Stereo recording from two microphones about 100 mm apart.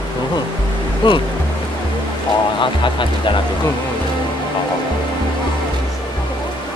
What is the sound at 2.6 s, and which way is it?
Speech, 55° left (ahead or behind).